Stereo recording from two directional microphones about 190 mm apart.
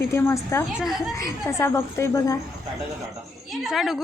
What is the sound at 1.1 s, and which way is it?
A woman's voice, 15° left (ahead or behind).